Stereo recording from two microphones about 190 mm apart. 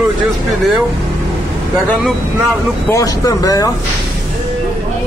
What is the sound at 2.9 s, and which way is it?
Speech, 20° left (ahead or behind).